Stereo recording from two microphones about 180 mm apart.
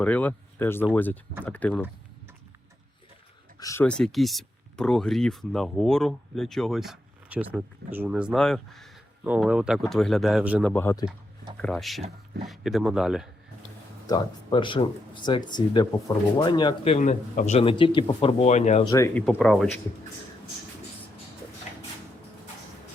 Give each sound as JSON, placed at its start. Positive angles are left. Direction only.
{"t": 0.0, "sound": "speech", "side_deg": 10}
{"t": 3.6, "sound": "speech", "side_deg": 15}
{"t": 3.8, "sound": "speech", "side_deg": 5}
{"t": 10.6, "sound": "speech", "side_deg": 10}
{"t": 11.6, "sound": "speech", "side_deg": 0}
{"t": 14.1, "sound": "speech", "side_deg": 25}
{"t": 18.9, "sound": "speech", "side_deg": 15}
{"t": 19.4, "sound": "speech", "side_deg": 0}